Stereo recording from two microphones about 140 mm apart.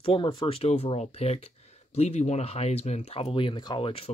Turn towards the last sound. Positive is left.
turn(degrees=35)  # may be behind; listen again after turning